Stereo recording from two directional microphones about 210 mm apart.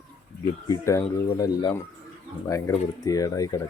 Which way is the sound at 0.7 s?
15° left (ahead or behind).